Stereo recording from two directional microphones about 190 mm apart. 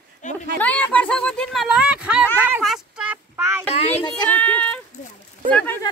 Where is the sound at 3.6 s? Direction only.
35° left (ahead or behind).